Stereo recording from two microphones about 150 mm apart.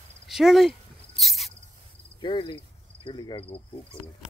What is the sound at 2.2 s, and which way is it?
Cricket, 35° left (ahead or behind).